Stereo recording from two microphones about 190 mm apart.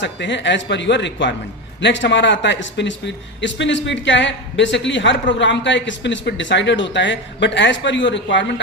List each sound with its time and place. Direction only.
0.0 s a woman's voice: 70° left (ahead or behind)